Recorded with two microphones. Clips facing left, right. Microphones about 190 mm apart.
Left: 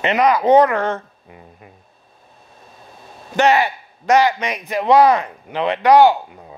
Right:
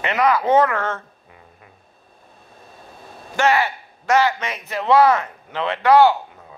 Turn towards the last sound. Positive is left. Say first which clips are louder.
# left 2 dB
turn(degrees=15)  # may be behind; listen again after turning